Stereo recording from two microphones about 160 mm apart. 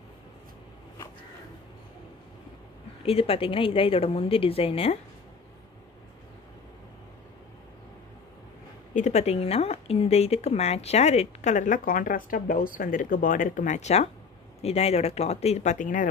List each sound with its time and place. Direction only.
3.0 s a woman's voice: 35° left (ahead or behind)
8.9 s speech: 45° left (ahead or behind)